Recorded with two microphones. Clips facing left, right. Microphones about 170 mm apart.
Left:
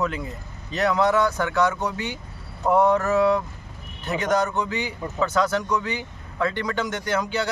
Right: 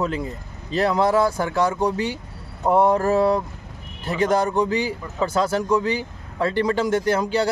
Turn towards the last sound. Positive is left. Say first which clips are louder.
# right 5 dB
turn(degrees=-30)  # may be behind; listen again after turning